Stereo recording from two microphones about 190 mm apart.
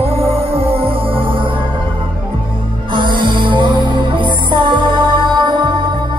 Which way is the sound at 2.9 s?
25° right (ahead or behind).